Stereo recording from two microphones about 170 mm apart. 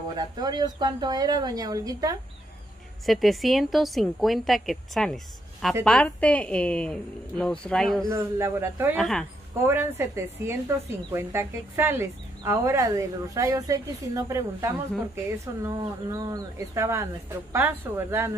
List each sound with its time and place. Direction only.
0.1 s speech: 25° right (ahead or behind)
3.1 s a woman's voice: centre (ahead or behind)
8.1 s speech: 15° right (ahead or behind)
8.9 s a woman's voice: centre (ahead or behind)
9.5 s speech: 15° right (ahead or behind)